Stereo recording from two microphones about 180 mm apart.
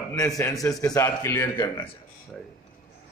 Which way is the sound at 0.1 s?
20° left (ahead or behind).